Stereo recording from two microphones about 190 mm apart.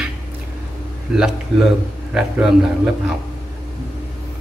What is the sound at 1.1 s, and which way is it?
A man's voice, 5° right (ahead or behind).